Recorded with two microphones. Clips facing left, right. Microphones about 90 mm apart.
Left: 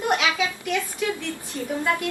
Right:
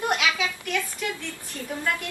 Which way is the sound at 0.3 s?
20° left (ahead or behind).